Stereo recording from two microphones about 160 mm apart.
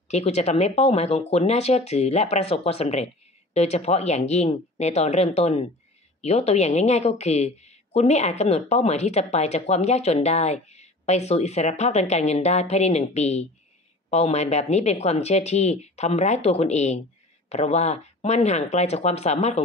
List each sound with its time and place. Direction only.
0.1 s a woman's voice: 40° left (ahead or behind)